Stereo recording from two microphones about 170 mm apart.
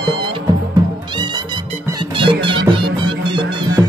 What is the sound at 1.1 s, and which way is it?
Music, 25° right (ahead or behind).